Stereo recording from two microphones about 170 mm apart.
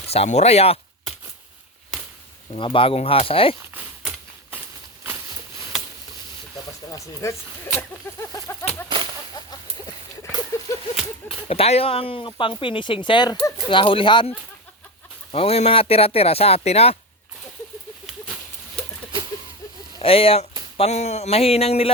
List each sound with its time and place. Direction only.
0.1 s speech: 40° left (ahead or behind)
2.5 s speech: 30° left (ahead or behind)
6.9 s speech: 15° left (ahead or behind)
10.7 s whip: 20° left (ahead or behind)
11.4 s speech: 35° left (ahead or behind)
20.0 s speech: 35° left (ahead or behind)